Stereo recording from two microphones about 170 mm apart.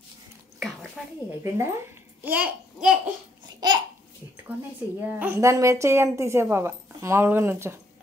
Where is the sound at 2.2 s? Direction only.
10° right (ahead or behind).